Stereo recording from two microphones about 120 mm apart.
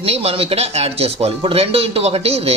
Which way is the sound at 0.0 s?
55° right (ahead or behind).